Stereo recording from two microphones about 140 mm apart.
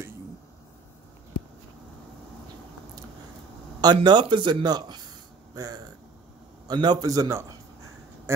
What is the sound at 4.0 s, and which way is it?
A man's voice, 35° right (ahead or behind).